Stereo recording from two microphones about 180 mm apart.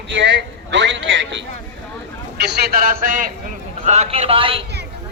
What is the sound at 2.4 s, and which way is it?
Speech, 60° right (ahead or behind).